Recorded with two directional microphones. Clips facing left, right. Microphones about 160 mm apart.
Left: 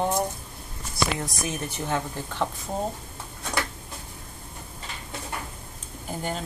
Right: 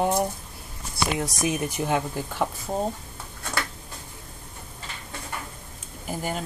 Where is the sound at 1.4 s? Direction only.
15° right (ahead or behind).